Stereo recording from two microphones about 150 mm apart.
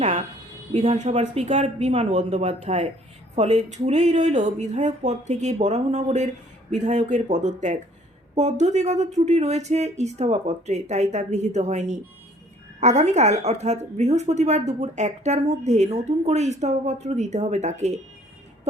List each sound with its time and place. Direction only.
0.7 s speech: 45° right (ahead or behind)